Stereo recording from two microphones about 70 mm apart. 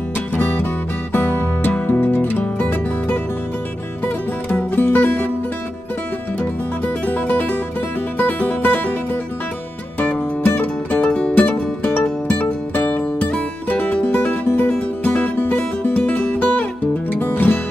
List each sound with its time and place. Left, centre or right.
1.1 s music: left
4.0 s music: left
7.1 s music: left
11.0 s music: centre
11.4 s music: left